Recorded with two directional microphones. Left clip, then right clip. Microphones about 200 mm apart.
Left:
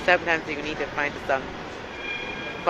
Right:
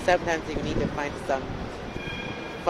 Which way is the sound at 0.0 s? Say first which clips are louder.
Left 2 dB; 10° right (ahead or behind).